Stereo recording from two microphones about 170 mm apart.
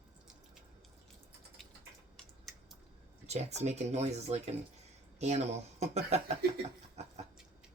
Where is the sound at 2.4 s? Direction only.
Centre (ahead or behind).